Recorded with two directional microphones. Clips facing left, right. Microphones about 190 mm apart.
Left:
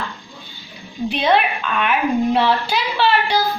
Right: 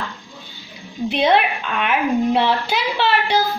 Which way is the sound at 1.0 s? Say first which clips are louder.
Right 1 dB; 20° right (ahead or behind).